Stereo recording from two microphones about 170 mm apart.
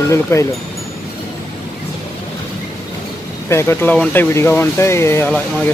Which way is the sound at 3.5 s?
15° left (ahead or behind).